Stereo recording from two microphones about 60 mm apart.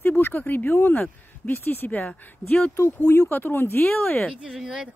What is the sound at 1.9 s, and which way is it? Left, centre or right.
Speech, left.